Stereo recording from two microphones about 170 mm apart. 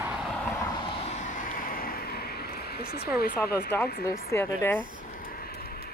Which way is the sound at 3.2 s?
65° left (ahead or behind).